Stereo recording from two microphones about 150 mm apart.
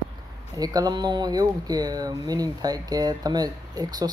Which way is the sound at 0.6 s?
25° right (ahead or behind).